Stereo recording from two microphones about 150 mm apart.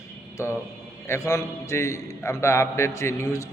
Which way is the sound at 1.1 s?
20° left (ahead or behind).